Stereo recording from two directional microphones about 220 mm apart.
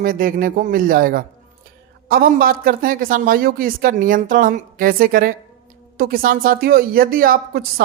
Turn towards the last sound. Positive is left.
turn(degrees=-40)  # may be behind; listen again after turning